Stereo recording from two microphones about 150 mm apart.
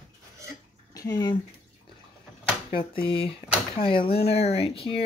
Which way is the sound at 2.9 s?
35° left (ahead or behind).